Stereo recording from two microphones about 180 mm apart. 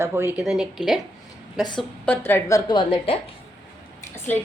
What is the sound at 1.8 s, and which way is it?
A woman's voice, 10° left (ahead or behind).